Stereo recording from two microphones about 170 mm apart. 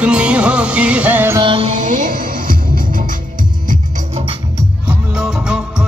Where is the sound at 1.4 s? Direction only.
30° right (ahead or behind).